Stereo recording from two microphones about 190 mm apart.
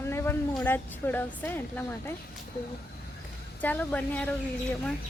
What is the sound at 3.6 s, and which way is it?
Speech, 10° left (ahead or behind).